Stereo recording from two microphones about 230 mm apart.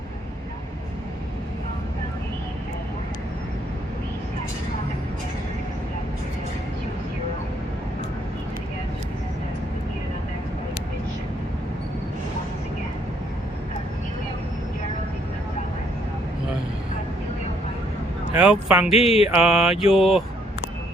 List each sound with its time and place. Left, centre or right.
18.3 s speech: centre
18.9 s a sound: left
19.3 s speech: centre